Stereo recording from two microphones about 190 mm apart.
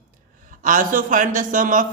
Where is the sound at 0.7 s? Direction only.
45° right (ahead or behind).